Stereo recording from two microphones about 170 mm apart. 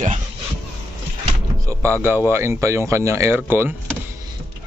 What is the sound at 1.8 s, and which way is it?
Speech, 15° right (ahead or behind).